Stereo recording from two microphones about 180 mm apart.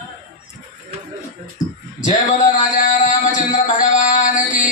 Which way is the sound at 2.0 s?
45° left (ahead or behind).